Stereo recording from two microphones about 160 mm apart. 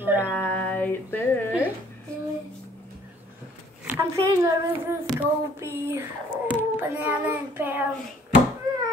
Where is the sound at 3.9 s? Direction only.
15° right (ahead or behind).